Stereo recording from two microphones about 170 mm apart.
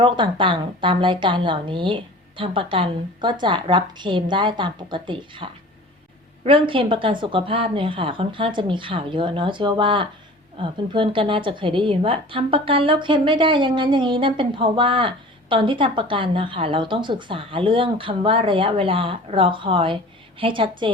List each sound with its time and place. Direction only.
0.0 s a woman's voice: 30° right (ahead or behind)